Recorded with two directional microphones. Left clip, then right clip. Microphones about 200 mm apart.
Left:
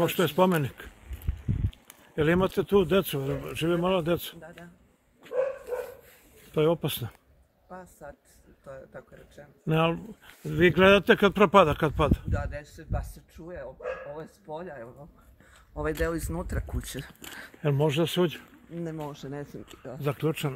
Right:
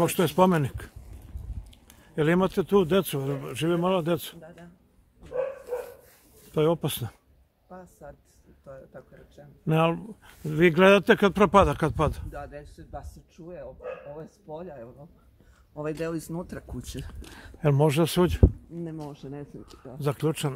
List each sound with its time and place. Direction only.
0.0 s speech: 15° right (ahead or behind)
1.3 s a sound: 15° left (ahead or behind)
1.7 s speech: 10° right (ahead or behind)
4.4 s speech: 5° left (ahead or behind)
6.5 s speech: 10° right (ahead or behind)
7.7 s a man's voice: 5° left (ahead or behind)
9.7 s speech: 15° right (ahead or behind)
12.3 s speech: 35° left (ahead or behind)
13.4 s speech: 5° left (ahead or behind)
17.6 s speech: 25° right (ahead or behind)
18.9 s speech: 45° left (ahead or behind)
20.0 s speech: 10° right (ahead or behind)